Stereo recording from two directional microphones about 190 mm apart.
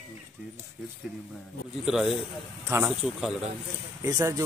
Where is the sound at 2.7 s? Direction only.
15° right (ahead or behind).